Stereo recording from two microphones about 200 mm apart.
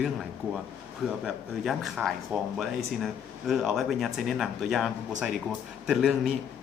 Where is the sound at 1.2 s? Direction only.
Centre (ahead or behind).